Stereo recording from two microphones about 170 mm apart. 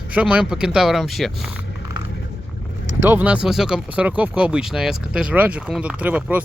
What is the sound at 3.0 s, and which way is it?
Speech, 10° right (ahead or behind).